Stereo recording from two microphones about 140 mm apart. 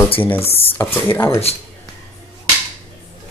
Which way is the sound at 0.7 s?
15° left (ahead or behind).